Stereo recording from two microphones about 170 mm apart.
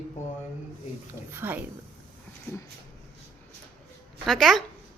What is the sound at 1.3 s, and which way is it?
Speech, 10° right (ahead or behind).